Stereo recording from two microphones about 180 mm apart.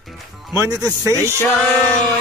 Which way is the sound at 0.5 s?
20° right (ahead or behind).